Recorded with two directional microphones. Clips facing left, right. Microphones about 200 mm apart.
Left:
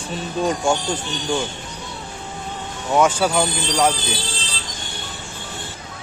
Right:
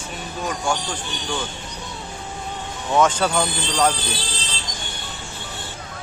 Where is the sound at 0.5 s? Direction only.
25° left (ahead or behind).